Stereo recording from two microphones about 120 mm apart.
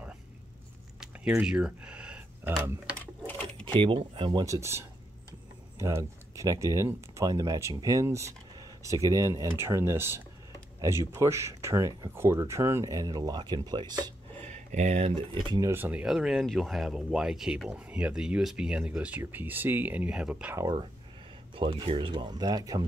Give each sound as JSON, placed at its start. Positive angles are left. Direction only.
{"t": 1.4, "sound": "speech", "side_deg": -10}
{"t": 3.3, "sound": "sewing machine", "side_deg": 15}
{"t": 3.6, "sound": "speech", "side_deg": -45}
{"t": 4.5, "sound": "speech", "side_deg": -25}
{"t": 14.5, "sound": "speech", "side_deg": -80}
{"t": 15.3, "sound": "speech", "side_deg": -35}
{"t": 15.7, "sound": "speech", "side_deg": -15}
{"t": 21.5, "sound": "speech", "side_deg": -50}